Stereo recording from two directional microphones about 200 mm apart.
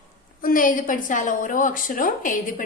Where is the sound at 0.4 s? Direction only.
45° left (ahead or behind).